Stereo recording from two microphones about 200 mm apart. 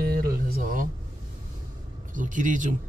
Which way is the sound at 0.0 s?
50° right (ahead or behind).